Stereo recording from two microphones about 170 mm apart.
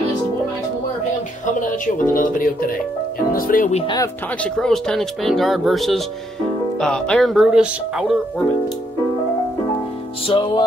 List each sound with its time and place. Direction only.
1.4 s speech: 50° left (ahead or behind)
3.7 s music: 30° left (ahead or behind)
4.4 s speech: 5° left (ahead or behind)
10.2 s music: 30° left (ahead or behind)